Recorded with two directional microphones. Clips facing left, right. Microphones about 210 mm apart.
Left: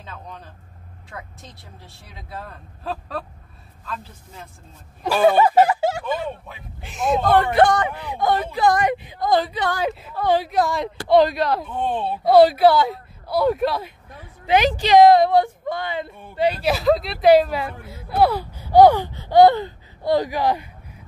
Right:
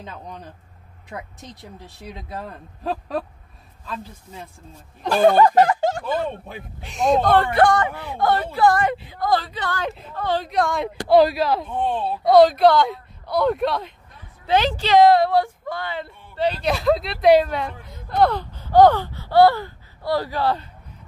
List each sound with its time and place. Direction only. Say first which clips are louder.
1.1 s a woman's voice: right 4 dB; 15° right (ahead or behind)
5.0 s speech: right 1 dB; 5° left (ahead or behind)
7.5 s speech: left 1 dB; 20° left (ahead or behind)